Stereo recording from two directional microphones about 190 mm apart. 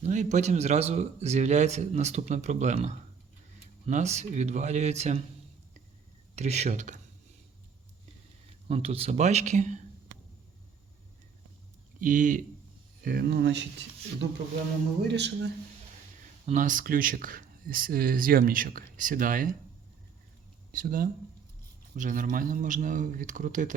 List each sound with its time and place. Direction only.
0.0 s a man's voice: 40° right (ahead or behind)
6.3 s a man's voice: 35° right (ahead or behind)
8.6 s a man's voice: 30° right (ahead or behind)
11.9 s speech: 45° right (ahead or behind); by 13.7 s 65° right (ahead or behind)
15.0 s speech: 65° right (ahead or behind)
16.5 s speech: 45° right (ahead or behind)
20.7 s speech: 50° right (ahead or behind)